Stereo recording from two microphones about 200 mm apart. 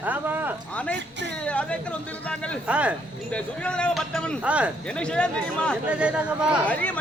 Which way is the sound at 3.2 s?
5° left (ahead or behind).